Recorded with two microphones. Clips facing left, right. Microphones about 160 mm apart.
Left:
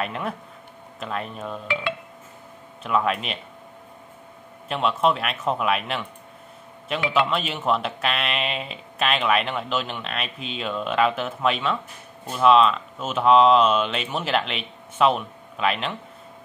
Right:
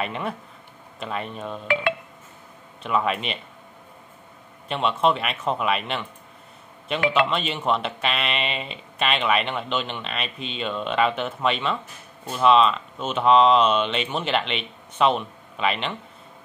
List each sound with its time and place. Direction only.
0.0 s speech: centre (ahead or behind)
2.8 s speech: centre (ahead or behind)
4.6 s speech: centre (ahead or behind)
7.2 s speech: 5° left (ahead or behind)